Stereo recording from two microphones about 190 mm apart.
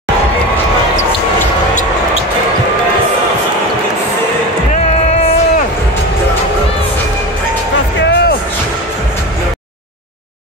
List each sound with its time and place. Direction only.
8.0 s music: 65° left (ahead or behind)